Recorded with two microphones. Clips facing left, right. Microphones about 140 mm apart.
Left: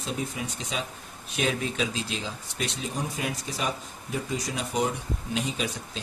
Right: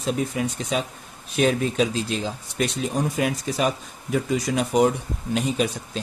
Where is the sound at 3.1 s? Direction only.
65° right (ahead or behind).